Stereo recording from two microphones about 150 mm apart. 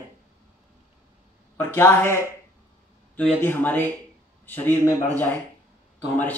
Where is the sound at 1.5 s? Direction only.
15° left (ahead or behind).